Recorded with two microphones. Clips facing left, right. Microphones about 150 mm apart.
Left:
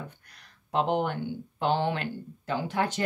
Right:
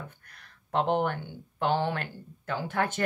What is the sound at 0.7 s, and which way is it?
Speech, 15° left (ahead or behind).